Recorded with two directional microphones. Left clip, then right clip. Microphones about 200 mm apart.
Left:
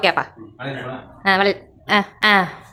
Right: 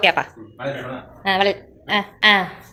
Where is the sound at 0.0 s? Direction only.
10° left (ahead or behind).